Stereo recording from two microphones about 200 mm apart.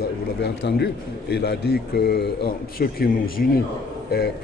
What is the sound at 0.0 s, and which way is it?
A man's voice, 55° left (ahead or behind).